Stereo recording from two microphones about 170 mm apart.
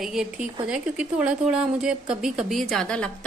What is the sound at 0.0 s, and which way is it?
A woman's voice, 5° right (ahead or behind).